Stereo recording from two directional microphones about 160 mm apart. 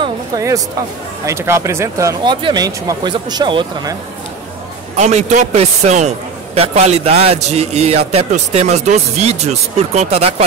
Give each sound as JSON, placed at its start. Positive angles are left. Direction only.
{"t": 1.2, "sound": "speech", "side_deg": -15}
{"t": 4.9, "sound": "a man's voice", "side_deg": -45}